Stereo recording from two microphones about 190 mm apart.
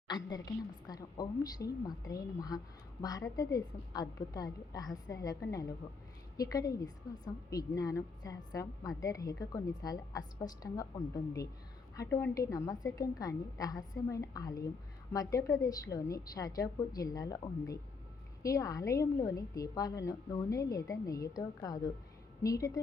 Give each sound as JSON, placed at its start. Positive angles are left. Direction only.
{"t": 0.1, "sound": "a woman's voice", "side_deg": 20}